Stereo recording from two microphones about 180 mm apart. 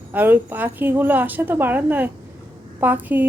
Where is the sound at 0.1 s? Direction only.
10° right (ahead or behind).